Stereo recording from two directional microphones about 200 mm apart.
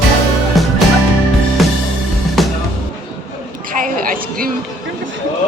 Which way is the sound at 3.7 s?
45° right (ahead or behind).